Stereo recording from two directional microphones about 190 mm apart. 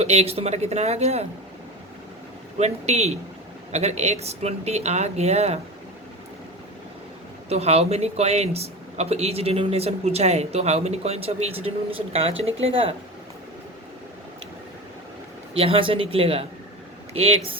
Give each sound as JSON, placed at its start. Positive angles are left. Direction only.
{"t": 0.0, "sound": "speech", "side_deg": -35}
{"t": 2.6, "sound": "speech", "side_deg": -35}
{"t": 7.5, "sound": "speech", "side_deg": -35}
{"t": 15.5, "sound": "speech", "side_deg": -30}